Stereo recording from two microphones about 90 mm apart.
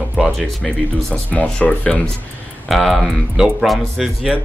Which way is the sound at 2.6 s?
Centre (ahead or behind).